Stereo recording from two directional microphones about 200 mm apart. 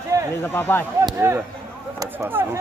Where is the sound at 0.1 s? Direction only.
15° right (ahead or behind).